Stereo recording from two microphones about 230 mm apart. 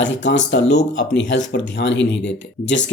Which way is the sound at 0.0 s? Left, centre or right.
Left.